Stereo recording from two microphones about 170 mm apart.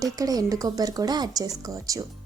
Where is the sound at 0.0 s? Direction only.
20° right (ahead or behind).